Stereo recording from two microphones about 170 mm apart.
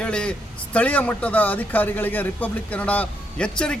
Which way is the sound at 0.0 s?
5° left (ahead or behind).